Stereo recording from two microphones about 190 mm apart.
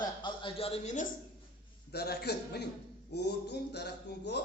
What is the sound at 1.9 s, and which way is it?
Speech, 55° left (ahead or behind).